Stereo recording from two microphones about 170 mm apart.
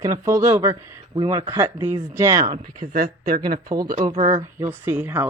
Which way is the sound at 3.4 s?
20° right (ahead or behind).